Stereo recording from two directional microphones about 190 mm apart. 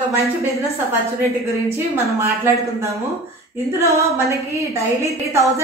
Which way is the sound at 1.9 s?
15° right (ahead or behind).